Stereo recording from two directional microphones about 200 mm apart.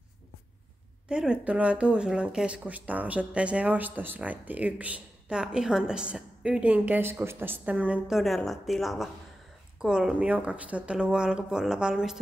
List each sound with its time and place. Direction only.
1.0 s speech: 5° right (ahead or behind)